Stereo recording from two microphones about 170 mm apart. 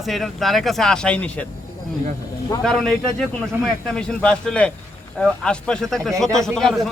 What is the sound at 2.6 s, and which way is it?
A man's voice, 5° left (ahead or behind).